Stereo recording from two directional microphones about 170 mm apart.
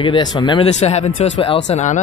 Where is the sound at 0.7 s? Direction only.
40° left (ahead or behind).